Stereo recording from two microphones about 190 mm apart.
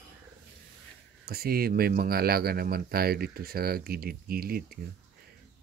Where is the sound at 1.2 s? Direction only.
55° right (ahead or behind).